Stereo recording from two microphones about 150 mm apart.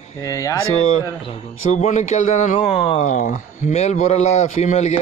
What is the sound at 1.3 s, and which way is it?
Speech, 50° left (ahead or behind).